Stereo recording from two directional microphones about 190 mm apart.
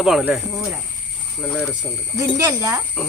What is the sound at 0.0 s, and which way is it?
Speech, 5° right (ahead or behind).